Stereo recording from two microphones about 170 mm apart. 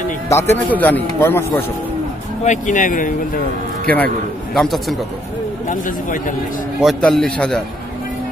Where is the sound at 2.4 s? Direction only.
45° left (ahead or behind).